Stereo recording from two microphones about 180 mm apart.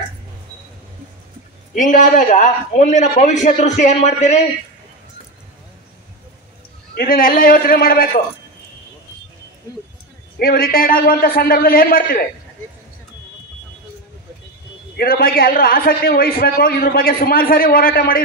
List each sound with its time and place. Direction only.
1.8 s a man's voice: 45° left (ahead or behind)
7.0 s a man's voice: 50° left (ahead or behind)
10.4 s a man's voice: 55° left (ahead or behind)
15.0 s a man's voice: 55° left (ahead or behind)